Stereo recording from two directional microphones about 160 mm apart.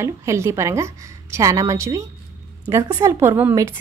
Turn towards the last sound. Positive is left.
turn(degrees=-15)  # may be behind; listen again after turning